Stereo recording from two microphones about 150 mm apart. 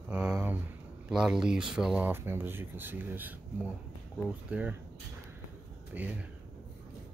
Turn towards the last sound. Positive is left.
turn(degrees=-10)  # may be behind; listen again after turning